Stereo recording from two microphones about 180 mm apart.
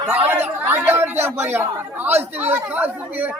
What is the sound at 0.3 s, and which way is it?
Speech, 10° right (ahead or behind).